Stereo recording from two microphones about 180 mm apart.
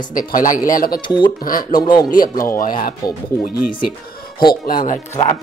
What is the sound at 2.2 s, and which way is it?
Speech, 50° left (ahead or behind).